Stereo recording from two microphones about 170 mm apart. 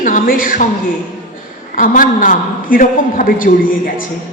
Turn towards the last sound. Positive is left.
turn(degrees=55)  # may be behind; listen again after turning